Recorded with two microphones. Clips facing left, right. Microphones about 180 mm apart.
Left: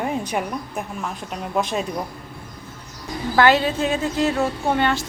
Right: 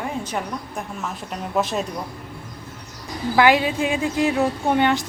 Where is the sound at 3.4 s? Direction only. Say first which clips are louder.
Even; 10° right (ahead or behind).